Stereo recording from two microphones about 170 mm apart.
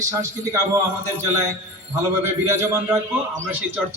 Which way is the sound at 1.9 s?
15° right (ahead or behind).